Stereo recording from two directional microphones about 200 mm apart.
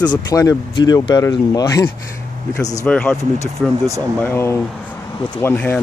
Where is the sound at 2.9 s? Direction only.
5° left (ahead or behind).